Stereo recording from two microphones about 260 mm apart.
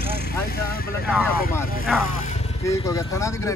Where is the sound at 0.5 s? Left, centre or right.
Left.